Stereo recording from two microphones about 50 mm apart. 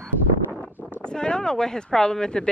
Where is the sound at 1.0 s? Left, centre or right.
Centre.